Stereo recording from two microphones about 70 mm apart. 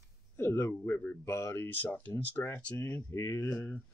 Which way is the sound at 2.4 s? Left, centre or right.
Left.